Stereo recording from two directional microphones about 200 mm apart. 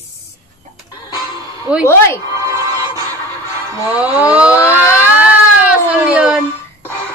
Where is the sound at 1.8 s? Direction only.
10° left (ahead or behind).